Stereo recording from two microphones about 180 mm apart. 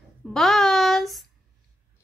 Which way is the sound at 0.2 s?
Centre (ahead or behind).